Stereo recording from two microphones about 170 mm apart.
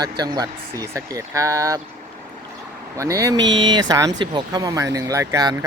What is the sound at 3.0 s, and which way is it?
Speech, 15° right (ahead or behind).